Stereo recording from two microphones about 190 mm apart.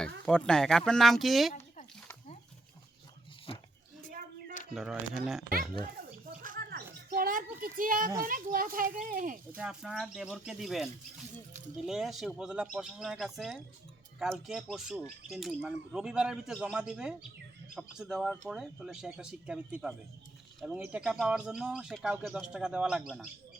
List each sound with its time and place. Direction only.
0.3 s speech: 5° left (ahead or behind)
1.5 s a sound: 40° left (ahead or behind)
4.7 s speech: centre (ahead or behind)
5.5 s a sound: 50° right (ahead or behind)
7.1 s a child's voice: 50° right (ahead or behind)
9.6 s speech: 5° right (ahead or behind)
11.9 s speech: centre (ahead or behind)